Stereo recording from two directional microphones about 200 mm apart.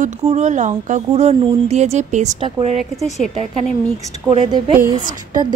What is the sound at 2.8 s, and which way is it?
Speech, centre (ahead or behind).